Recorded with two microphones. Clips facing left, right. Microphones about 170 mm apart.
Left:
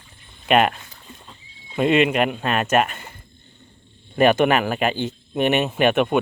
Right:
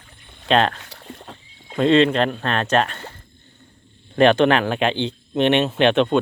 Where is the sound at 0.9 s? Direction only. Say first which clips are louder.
Right 6 dB; 75° right (ahead or behind).